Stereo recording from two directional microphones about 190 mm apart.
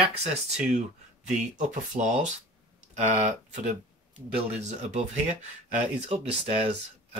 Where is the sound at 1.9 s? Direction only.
40° right (ahead or behind).